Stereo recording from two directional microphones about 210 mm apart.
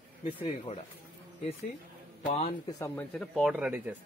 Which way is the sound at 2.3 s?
25° left (ahead or behind).